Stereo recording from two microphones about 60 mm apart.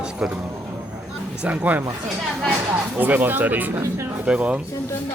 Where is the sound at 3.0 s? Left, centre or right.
Right.